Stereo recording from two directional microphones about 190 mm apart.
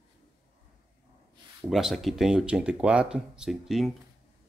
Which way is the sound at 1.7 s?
Centre (ahead or behind).